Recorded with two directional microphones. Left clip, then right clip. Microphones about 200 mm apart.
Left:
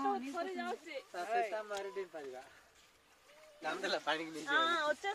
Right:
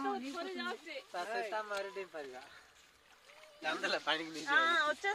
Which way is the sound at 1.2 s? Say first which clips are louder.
Left 5 dB; 45° right (ahead or behind).